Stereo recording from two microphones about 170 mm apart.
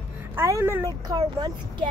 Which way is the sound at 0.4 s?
15° right (ahead or behind).